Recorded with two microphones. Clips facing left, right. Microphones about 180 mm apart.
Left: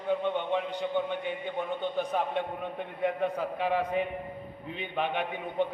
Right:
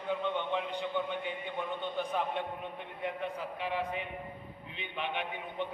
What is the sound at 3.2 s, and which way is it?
A man's voice, 45° left (ahead or behind).